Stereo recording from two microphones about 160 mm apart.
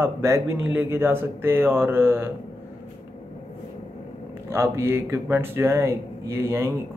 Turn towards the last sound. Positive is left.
turn(degrees=-15)  # may be behind; listen again after turning